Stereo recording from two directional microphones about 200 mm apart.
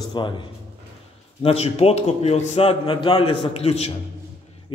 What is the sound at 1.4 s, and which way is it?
A man's voice, 30° left (ahead or behind).